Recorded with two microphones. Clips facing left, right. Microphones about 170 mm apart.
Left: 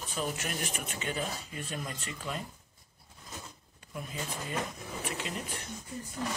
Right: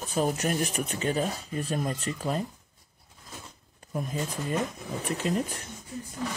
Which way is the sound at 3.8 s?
40° right (ahead or behind).